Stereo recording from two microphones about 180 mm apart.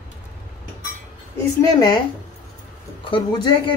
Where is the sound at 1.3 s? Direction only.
20° left (ahead or behind).